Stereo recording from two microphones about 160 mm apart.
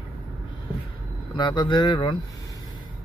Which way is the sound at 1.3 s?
30° left (ahead or behind).